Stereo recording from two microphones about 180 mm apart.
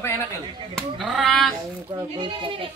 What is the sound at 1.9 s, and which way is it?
Speech, 25° right (ahead or behind).